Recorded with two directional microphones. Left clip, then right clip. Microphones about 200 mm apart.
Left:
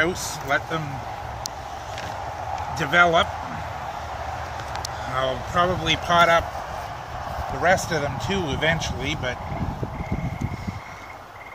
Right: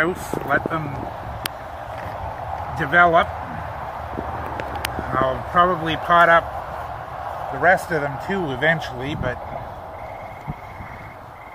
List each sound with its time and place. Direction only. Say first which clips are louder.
0.0 s speech: right 2 dB; 30° left (ahead or behind)
2.8 s a man's voice: right 3 dB; 35° left (ahead or behind)
5.1 s speech: right 4 dB; 30° left (ahead or behind)
7.6 s speech: right 3 dB; 20° left (ahead or behind)